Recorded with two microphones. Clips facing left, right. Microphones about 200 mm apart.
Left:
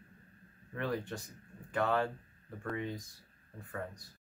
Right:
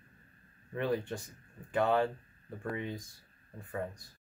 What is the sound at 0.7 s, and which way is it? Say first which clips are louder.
Speech: right 4 dB; 20° right (ahead or behind).